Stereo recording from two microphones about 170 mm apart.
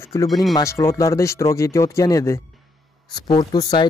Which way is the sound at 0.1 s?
20° left (ahead or behind).